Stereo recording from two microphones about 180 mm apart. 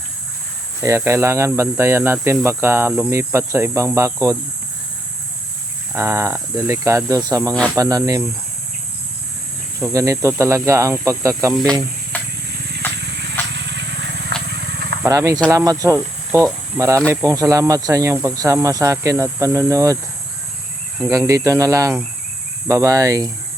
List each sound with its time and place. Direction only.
0.8 s speech: 15° right (ahead or behind)
5.9 s speech: 15° right (ahead or behind)
9.8 s speech: 20° right (ahead or behind)
12.1 s vehicle: 10° left (ahead or behind)
13.7 s a sound: 75° right (ahead or behind)
14.5 s a sound: 60° right (ahead or behind)
15.0 s speech: 15° right (ahead or behind)
21.1 s speech: 20° right (ahead or behind)